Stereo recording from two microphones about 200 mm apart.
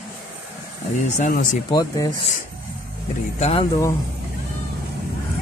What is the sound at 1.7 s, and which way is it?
Speech, 20° left (ahead or behind).